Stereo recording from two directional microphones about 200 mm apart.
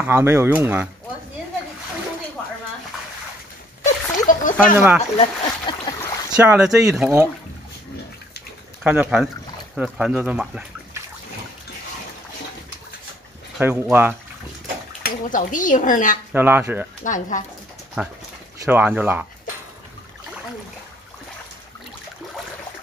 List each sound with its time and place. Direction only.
0.0 s speech: 10° right (ahead or behind)
3.8 s a sound: 40° left (ahead or behind)
4.7 s speech: 5° right (ahead or behind)
5.1 s speech: 25° left (ahead or behind)
6.3 s speech: 10° right (ahead or behind)
8.8 s speech: 5° right (ahead or behind)
13.6 s speech: 10° right (ahead or behind)
15.0 s speech: 40° left (ahead or behind)
16.3 s speech: 10° right (ahead or behind)
17.0 s speech: 40° left (ahead or behind)
18.0 s speech: 10° right (ahead or behind)